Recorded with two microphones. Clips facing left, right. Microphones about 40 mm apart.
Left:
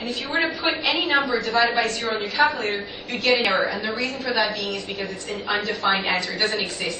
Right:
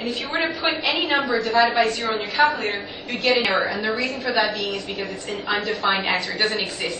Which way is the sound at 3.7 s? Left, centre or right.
Right.